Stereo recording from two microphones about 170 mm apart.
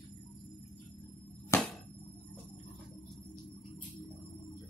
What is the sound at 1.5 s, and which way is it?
Music, 15° left (ahead or behind).